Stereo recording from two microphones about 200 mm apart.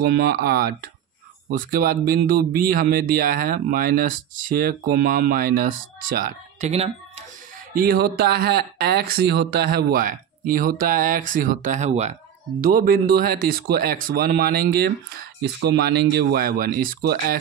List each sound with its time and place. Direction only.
0.1 s speech: 55° right (ahead or behind); by 6.9 s 35° right (ahead or behind)
7.7 s speech: 50° right (ahead or behind)